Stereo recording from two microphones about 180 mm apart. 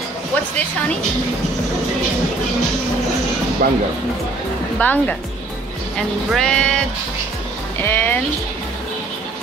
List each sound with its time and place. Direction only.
3.6 s speech: 50° right (ahead or behind)
4.7 s speech: 10° left (ahead or behind)
7.8 s speech: 10° left (ahead or behind)